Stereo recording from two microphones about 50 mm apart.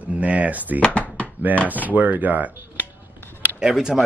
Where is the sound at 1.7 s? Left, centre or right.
Right.